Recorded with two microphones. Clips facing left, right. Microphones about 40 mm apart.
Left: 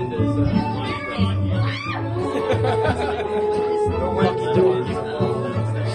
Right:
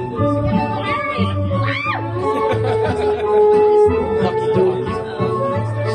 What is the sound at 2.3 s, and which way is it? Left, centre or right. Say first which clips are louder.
Music: right 2 dB; centre.